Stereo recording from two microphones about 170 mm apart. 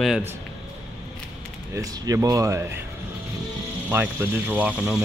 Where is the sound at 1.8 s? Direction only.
20° right (ahead or behind).